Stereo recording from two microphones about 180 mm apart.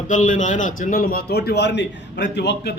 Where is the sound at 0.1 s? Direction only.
45° left (ahead or behind).